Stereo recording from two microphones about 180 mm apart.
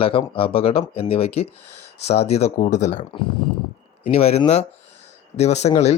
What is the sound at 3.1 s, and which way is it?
Speech, 25° left (ahead or behind).